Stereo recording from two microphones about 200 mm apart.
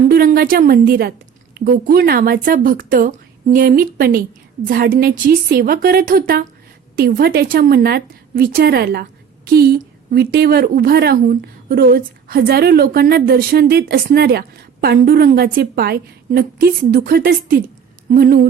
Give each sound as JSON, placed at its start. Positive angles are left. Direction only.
{"t": 0.1, "sound": "a woman's voice", "side_deg": -50}